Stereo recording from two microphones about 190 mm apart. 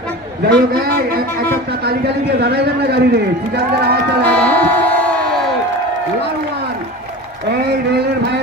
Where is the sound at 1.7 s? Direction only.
60° right (ahead or behind).